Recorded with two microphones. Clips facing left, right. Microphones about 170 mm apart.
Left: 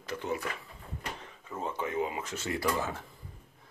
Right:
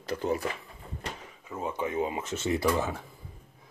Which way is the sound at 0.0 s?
35° right (ahead or behind).